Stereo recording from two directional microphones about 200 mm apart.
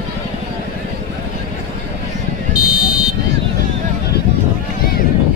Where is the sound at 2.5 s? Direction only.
20° left (ahead or behind).